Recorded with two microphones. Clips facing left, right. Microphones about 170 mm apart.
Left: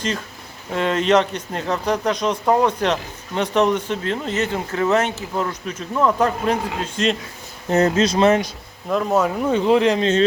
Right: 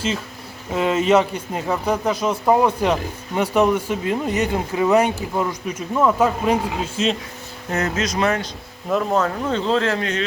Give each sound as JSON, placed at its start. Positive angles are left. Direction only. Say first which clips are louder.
{"t": 0.7, "sound": "speech", "louder": "right 1 dB", "side_deg": -5}
{"t": 7.7, "sound": "speech", "louder": "left 6 dB", "side_deg": 30}
{"t": 9.1, "sound": "speech", "louder": "left 2 dB", "side_deg": 10}